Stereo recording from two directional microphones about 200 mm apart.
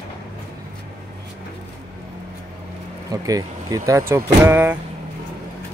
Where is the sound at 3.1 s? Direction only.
15° right (ahead or behind).